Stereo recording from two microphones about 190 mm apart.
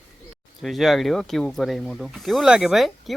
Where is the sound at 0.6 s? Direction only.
Centre (ahead or behind).